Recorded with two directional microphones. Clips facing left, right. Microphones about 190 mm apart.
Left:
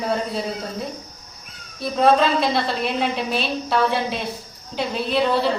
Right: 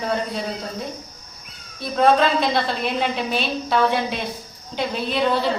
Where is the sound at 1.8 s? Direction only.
Centre (ahead or behind).